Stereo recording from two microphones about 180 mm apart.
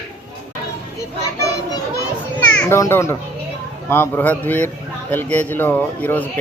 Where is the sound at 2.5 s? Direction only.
10° left (ahead or behind).